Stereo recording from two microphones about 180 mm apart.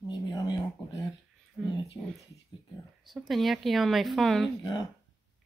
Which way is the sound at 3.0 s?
Centre (ahead or behind).